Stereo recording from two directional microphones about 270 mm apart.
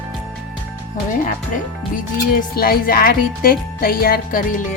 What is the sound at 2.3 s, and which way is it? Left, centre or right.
Speech, left.